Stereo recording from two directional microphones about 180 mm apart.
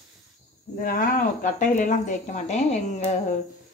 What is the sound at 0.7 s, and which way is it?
Speech, 50° left (ahead or behind).